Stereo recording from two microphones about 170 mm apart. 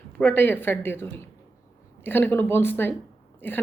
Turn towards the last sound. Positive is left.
turn(degrees=10)  # may be behind; listen again after turning